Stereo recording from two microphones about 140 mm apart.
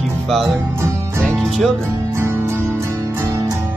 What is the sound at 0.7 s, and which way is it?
Music, 20° right (ahead or behind).